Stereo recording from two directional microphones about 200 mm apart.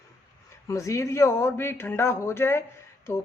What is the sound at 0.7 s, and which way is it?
Speech, 15° left (ahead or behind).